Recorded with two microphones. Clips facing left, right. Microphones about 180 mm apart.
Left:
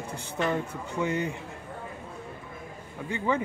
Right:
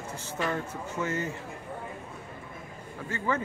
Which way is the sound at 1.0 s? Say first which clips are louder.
Left 3 dB; 15° left (ahead or behind).